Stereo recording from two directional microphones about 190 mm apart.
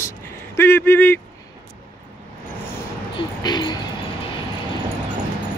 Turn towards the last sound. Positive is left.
turn(degrees=25)  # may be behind; listen again after turning